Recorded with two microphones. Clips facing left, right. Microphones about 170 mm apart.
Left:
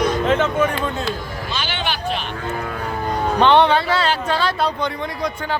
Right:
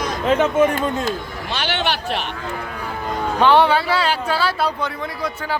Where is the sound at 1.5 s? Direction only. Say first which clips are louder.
Right 4 dB; 70° right (ahead or behind).